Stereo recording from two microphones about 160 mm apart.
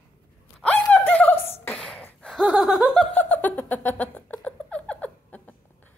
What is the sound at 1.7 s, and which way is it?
Sneeze, 5° left (ahead or behind).